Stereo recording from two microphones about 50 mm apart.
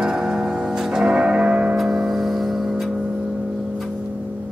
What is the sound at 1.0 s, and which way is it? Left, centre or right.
Music, centre.